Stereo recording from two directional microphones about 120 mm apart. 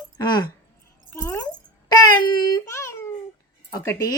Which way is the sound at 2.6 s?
25° left (ahead or behind).